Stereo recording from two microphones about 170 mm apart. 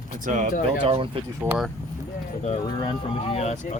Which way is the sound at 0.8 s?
30° right (ahead or behind).